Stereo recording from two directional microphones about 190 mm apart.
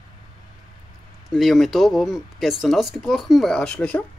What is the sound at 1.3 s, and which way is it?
Speech, centre (ahead or behind).